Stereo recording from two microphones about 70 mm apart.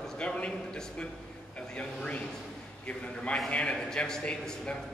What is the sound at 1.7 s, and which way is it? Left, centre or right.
A man's voice, centre.